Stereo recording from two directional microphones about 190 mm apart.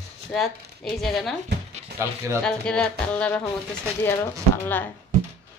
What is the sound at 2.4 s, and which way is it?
Music, 5° left (ahead or behind).